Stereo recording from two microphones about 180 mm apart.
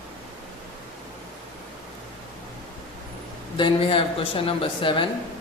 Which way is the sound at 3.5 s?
30° left (ahead or behind).